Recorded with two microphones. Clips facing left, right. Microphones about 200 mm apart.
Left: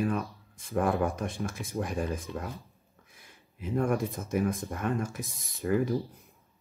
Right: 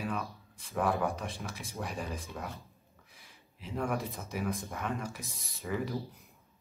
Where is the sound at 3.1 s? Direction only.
50° left (ahead or behind).